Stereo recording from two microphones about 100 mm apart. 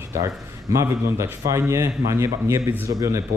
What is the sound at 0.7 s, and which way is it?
A man's voice, 30° right (ahead or behind).